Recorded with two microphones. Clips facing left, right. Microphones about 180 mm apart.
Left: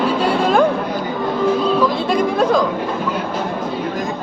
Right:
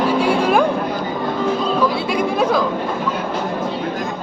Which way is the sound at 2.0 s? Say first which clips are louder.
Left 2 dB; 10° right (ahead or behind).